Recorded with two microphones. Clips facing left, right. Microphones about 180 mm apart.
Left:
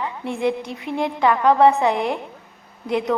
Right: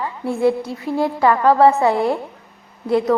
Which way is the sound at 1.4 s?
5° right (ahead or behind).